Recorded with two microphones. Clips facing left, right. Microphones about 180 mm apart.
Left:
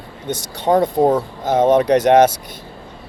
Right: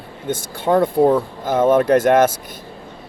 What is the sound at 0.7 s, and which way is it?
Speech, 35° left (ahead or behind).